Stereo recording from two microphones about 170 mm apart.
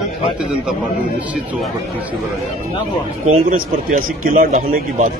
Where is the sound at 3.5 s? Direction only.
55° right (ahead or behind).